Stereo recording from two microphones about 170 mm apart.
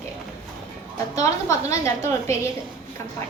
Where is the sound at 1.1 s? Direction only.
20° left (ahead or behind).